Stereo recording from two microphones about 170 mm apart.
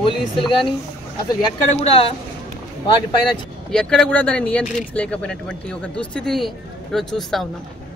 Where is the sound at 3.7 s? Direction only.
5° left (ahead or behind).